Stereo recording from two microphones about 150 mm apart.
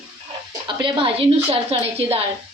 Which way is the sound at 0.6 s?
35° right (ahead or behind).